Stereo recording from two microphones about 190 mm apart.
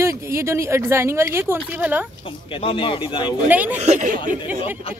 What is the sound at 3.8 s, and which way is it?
Speech, 40° right (ahead or behind).